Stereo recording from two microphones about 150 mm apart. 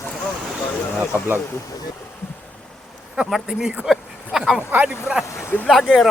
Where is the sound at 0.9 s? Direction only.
10° right (ahead or behind).